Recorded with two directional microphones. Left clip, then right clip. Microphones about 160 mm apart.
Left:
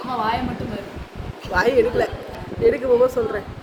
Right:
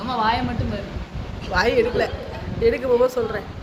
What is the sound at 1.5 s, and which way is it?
A woman's voice, 30° left (ahead or behind).